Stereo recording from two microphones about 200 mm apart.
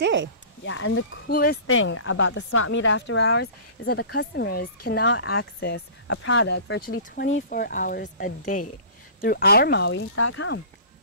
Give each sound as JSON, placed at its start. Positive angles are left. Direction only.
{"t": 0.0, "sound": "speech", "side_deg": -65}
{"t": 0.7, "sound": "speech", "side_deg": 75}
{"t": 1.3, "sound": "speech", "side_deg": 45}
{"t": 1.7, "sound": "speech", "side_deg": 90}
{"t": 5.6, "sound": "speech", "side_deg": 60}
{"t": 7.4, "sound": "speech", "side_deg": 45}